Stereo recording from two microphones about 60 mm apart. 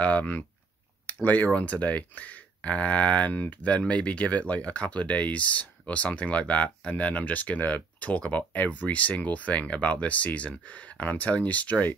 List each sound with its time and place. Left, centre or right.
0.0 s speech: left